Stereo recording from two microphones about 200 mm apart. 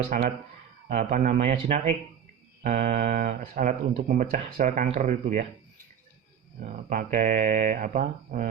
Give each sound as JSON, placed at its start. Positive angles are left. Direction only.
{"t": 0.1, "sound": "speech", "side_deg": -45}
{"t": 6.7, "sound": "speech", "side_deg": -40}